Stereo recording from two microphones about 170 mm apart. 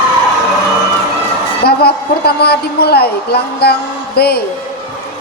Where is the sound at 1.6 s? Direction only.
70° left (ahead or behind).